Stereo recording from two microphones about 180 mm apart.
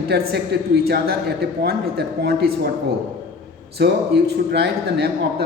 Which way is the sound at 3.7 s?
65° right (ahead or behind).